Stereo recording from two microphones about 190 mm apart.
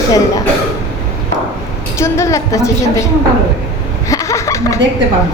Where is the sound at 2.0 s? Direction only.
15° left (ahead or behind).